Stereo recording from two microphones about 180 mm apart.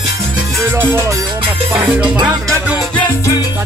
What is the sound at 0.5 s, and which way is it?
Music, 10° right (ahead or behind).